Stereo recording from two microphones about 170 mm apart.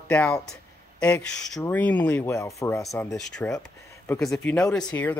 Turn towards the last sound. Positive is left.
turn(degrees=5)  # may be behind; listen again after turning